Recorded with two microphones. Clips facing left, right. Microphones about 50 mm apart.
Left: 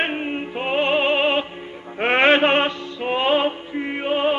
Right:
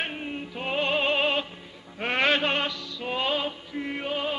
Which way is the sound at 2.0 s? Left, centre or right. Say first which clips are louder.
Left 8 dB; left.